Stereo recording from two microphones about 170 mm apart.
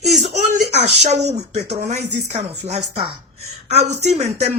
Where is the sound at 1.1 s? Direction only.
40° right (ahead or behind).